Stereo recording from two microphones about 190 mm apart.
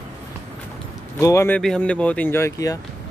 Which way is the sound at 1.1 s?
15° left (ahead or behind).